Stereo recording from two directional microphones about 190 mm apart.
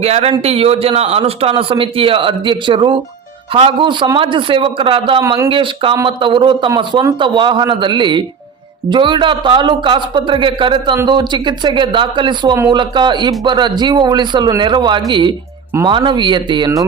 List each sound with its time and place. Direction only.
0.0 s a man's voice: 30° right (ahead or behind)